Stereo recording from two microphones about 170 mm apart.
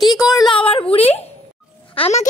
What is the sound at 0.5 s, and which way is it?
A woman's voice, 35° left (ahead or behind).